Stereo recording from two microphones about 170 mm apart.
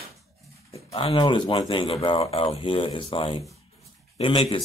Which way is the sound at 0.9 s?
30° left (ahead or behind).